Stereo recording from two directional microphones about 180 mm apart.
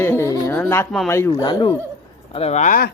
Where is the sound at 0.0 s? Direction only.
15° left (ahead or behind).